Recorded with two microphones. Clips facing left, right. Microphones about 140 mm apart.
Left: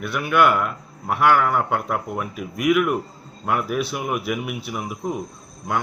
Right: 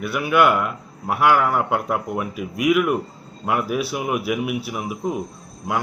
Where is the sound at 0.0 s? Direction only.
5° right (ahead or behind).